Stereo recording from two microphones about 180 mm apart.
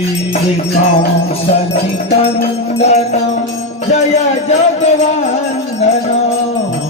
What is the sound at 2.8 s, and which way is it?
Music, 40° left (ahead or behind).